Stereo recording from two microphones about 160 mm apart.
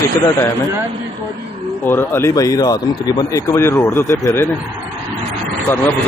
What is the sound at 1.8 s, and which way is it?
Speech, 15° left (ahead or behind).